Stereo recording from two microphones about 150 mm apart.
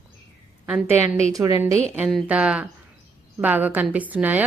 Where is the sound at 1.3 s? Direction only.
20° right (ahead or behind).